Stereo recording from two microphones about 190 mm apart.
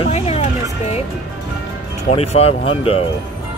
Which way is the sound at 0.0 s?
30° left (ahead or behind).